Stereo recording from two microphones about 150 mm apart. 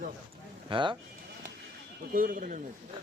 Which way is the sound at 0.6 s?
30° right (ahead or behind).